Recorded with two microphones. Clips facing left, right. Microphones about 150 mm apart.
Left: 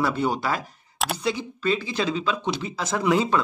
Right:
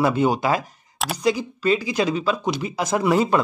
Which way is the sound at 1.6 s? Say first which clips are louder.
Right 4 dB; 15° right (ahead or behind).